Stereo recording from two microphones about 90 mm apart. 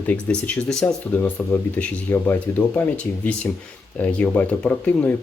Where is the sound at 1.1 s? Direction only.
20° left (ahead or behind).